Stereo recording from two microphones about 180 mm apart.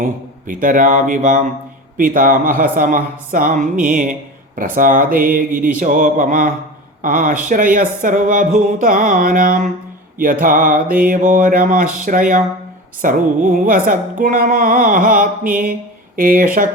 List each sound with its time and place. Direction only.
0.0 s speech: 50° right (ahead or behind)